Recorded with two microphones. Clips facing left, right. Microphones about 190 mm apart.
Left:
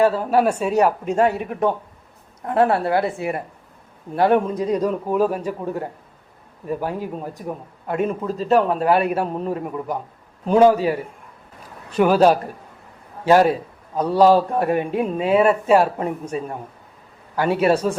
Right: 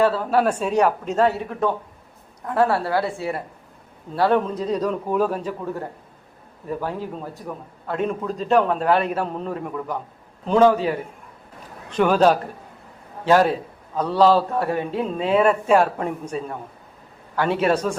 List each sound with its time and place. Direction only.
0.2 s a man's voice: 10° left (ahead or behind)
17.5 s a man's voice: 10° left (ahead or behind)